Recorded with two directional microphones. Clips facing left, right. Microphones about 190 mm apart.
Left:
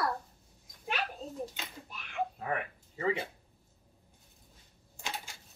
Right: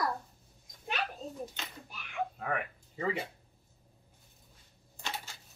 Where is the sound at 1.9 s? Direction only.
Centre (ahead or behind).